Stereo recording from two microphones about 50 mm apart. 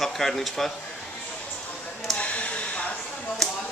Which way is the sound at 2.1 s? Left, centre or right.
Left.